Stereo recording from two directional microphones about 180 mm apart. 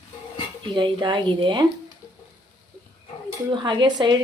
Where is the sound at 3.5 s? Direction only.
25° right (ahead or behind).